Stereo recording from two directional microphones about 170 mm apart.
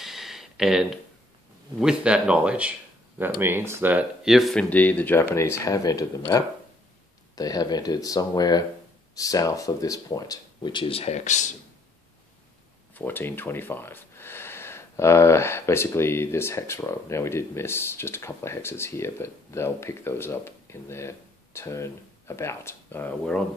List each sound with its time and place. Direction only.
0.0 s a sound: centre (ahead or behind)
1.8 s speech: 5° right (ahead or behind); by 6.2 s 20° left (ahead or behind)
7.3 s speech: 25° left (ahead or behind); by 11.5 s 45° left (ahead or behind)
12.9 s speech: 10° left (ahead or behind)